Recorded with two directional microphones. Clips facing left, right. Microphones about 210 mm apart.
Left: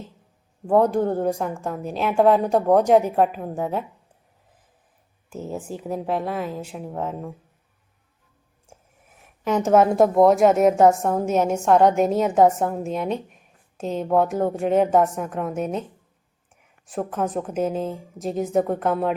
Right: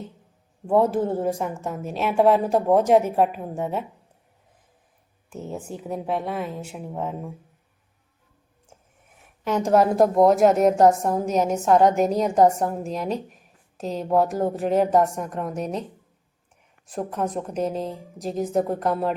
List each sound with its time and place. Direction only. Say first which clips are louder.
0.7 s a woman's voice: left 2 dB; centre (ahead or behind)
5.3 s a woman's voice: left 2 dB; centre (ahead or behind)
8.7 s a sound: left 3 dB; 10° left (ahead or behind)
9.4 s a woman's voice: left 2 dB; centre (ahead or behind)